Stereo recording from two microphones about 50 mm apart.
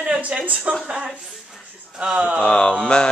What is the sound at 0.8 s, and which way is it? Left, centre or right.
Speech, centre.